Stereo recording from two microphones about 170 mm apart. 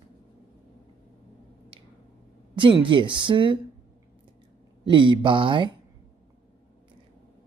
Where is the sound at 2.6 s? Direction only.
30° right (ahead or behind).